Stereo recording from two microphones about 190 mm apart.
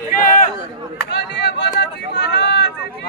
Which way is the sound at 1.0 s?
65° left (ahead or behind).